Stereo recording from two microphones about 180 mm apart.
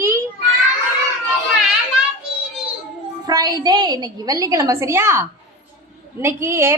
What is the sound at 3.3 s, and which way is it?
A woman's voice, 20° right (ahead or behind).